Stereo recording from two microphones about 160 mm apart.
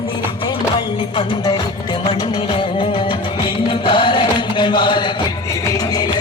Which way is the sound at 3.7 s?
30° left (ahead or behind).